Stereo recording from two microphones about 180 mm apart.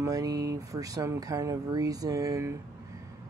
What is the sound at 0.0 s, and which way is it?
Speech, 20° right (ahead or behind).